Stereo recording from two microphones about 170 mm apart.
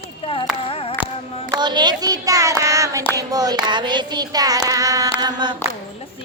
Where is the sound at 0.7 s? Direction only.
35° left (ahead or behind).